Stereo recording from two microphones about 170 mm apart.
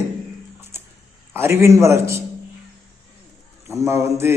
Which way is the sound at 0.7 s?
15° right (ahead or behind).